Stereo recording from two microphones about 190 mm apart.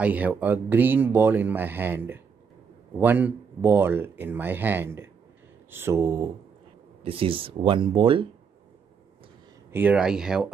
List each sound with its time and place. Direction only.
0.0 s speech: 10° right (ahead or behind)
7.0 s speech: 30° right (ahead or behind)
9.7 s speech: 10° right (ahead or behind)